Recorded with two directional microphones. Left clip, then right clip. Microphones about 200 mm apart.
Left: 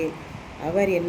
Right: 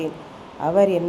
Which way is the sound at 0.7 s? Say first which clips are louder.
Right 5 dB; 20° right (ahead or behind).